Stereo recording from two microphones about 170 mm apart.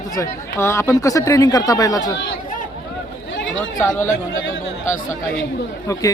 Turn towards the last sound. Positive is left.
turn(degrees=20)  # may be behind; listen again after turning